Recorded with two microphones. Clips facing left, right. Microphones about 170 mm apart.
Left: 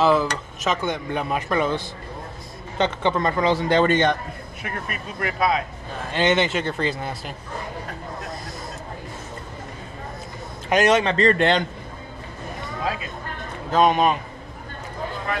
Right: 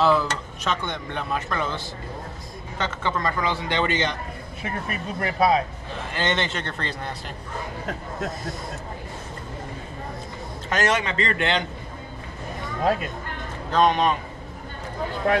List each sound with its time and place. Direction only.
0.0 s a man's voice: centre (ahead or behind)
2.8 s a man's voice: 20° left (ahead or behind); by 4.2 s 50° left (ahead or behind)
5.2 s speech: 30° right (ahead or behind)
6.1 s a man's voice: 10° left (ahead or behind)
10.7 s a man's voice: 15° left (ahead or behind)
11.0 s a man's voice: 35° left (ahead or behind)
13.7 s speech: 5° left (ahead or behind)